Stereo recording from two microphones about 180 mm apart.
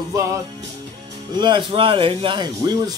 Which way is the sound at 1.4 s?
30° right (ahead or behind).